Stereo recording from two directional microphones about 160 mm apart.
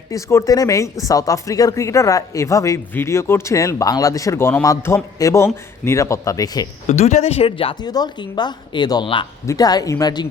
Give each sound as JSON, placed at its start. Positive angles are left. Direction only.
{"t": 0.1, "sound": "speech", "side_deg": 20}
{"t": 6.8, "sound": "speech", "side_deg": 45}